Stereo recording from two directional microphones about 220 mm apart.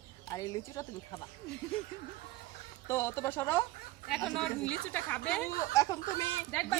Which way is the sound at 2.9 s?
10° left (ahead or behind).